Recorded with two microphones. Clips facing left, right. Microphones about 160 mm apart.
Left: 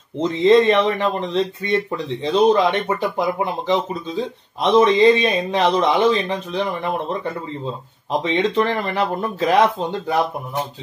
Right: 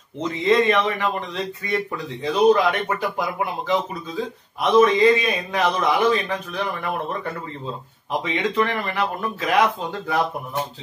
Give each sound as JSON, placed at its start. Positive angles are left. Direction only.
{"t": 0.2, "sound": "speech", "side_deg": 30}
{"t": 8.2, "sound": "speech", "side_deg": 30}